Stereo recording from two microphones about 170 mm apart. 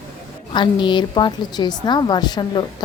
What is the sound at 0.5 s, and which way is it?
A woman's voice, 30° left (ahead or behind).